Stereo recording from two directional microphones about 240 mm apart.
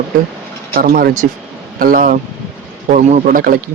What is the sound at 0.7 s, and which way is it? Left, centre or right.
Speech, right.